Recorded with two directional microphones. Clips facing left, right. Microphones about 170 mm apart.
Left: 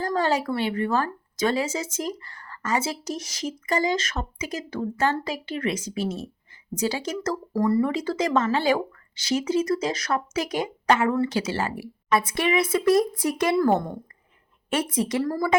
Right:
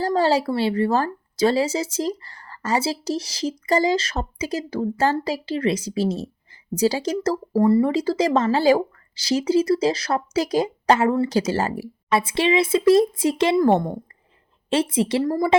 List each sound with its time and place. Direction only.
0.0 s speech: 30° right (ahead or behind)
12.1 s speech: 25° right (ahead or behind)